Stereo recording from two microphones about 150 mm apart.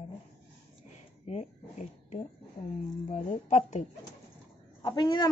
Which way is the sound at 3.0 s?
55° left (ahead or behind).